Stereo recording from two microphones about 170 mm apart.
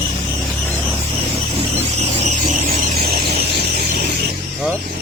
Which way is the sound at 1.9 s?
40° right (ahead or behind).